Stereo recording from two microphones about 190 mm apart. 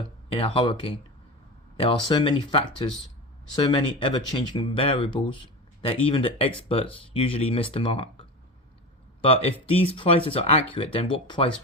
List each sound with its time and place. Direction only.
0.3 s speech: 30° left (ahead or behind)